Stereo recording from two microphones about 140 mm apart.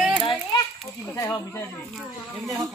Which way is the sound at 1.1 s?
15° left (ahead or behind).